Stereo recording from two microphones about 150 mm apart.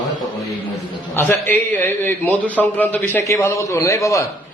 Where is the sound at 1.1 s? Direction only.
15° left (ahead or behind).